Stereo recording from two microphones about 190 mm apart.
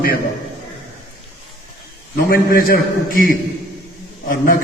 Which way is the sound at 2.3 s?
50° left (ahead or behind).